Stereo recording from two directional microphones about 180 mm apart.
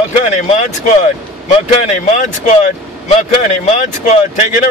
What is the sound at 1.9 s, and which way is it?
Speech, 45° left (ahead or behind).